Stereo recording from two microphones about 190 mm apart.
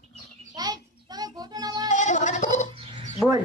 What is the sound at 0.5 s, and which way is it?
Child singing, 20° right (ahead or behind).